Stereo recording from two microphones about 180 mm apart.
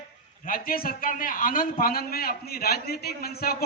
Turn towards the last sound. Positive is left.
turn(degrees=60)  # may be behind; listen again after turning